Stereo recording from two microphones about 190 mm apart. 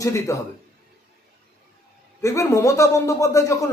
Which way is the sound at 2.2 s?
15° left (ahead or behind).